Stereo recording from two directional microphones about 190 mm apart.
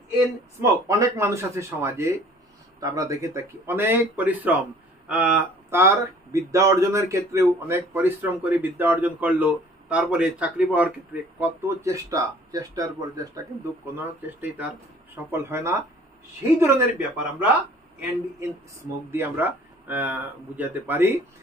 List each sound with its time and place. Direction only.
0.6 s speech: 15° right (ahead or behind)
19.0 s speech: 15° right (ahead or behind)